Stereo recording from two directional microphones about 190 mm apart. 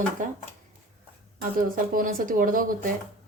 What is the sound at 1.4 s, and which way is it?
Speech, 45° right (ahead or behind).